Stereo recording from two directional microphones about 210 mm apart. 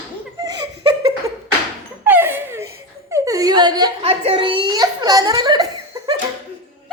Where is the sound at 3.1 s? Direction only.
15° right (ahead or behind).